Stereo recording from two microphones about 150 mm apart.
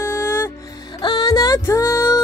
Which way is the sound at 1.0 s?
25° left (ahead or behind).